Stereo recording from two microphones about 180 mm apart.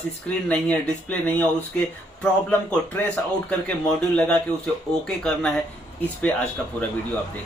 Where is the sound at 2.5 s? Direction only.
10° left (ahead or behind).